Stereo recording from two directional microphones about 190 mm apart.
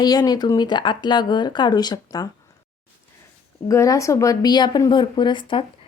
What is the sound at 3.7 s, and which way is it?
Speech, 15° left (ahead or behind).